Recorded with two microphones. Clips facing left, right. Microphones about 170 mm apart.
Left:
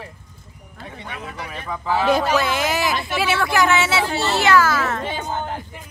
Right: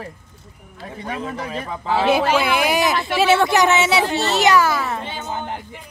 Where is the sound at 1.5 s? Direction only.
30° right (ahead or behind).